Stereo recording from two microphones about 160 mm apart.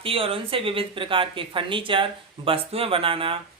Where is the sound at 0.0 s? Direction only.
35° right (ahead or behind).